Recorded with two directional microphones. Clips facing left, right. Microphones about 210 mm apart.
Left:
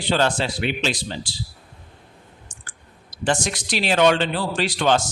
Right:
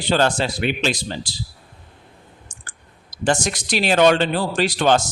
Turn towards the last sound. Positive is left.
turn(degrees=-45)  # may be behind; listen again after turning